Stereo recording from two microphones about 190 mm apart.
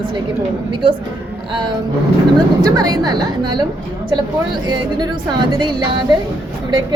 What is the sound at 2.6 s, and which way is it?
Speech, 20° right (ahead or behind).